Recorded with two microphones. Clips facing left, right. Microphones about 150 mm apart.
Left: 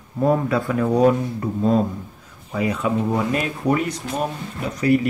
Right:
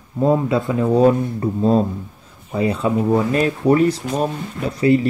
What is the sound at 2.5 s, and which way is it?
Speech, 30° right (ahead or behind).